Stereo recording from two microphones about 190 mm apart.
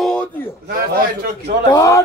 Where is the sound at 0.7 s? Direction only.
50° right (ahead or behind).